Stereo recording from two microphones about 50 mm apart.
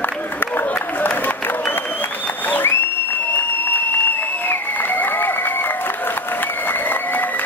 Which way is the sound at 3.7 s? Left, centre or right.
Left.